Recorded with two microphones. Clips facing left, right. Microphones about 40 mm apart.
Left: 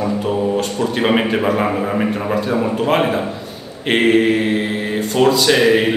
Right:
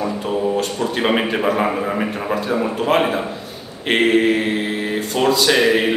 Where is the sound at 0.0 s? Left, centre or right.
Centre.